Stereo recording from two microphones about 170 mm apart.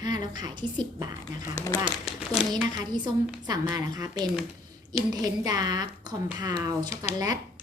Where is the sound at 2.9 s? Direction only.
25° right (ahead or behind).